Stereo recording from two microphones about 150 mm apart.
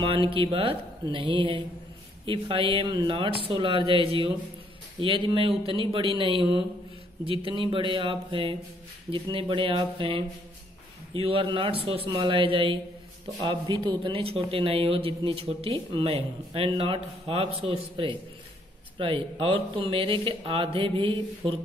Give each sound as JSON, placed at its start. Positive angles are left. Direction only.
{"t": 0.0, "sound": "a man's voice", "side_deg": -35}